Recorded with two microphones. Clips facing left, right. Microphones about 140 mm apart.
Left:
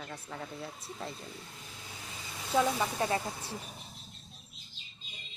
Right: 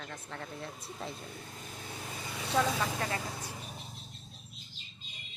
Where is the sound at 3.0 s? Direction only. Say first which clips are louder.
Left 5 dB; 20° left (ahead or behind).